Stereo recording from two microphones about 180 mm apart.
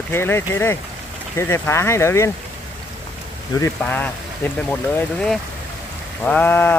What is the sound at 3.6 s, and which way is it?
Speech, 10° left (ahead or behind).